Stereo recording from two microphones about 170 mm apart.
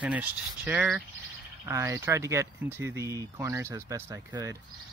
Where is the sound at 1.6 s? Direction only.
15° right (ahead or behind).